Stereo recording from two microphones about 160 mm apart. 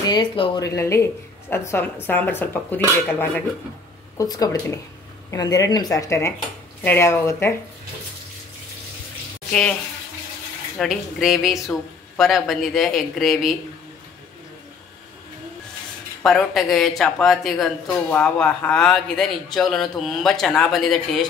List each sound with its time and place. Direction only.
0.0 s a woman's voice: 25° left (ahead or behind)
9.5 s speech: 5° left (ahead or behind)
10.8 s speech: centre (ahead or behind)
16.2 s speech: centre (ahead or behind)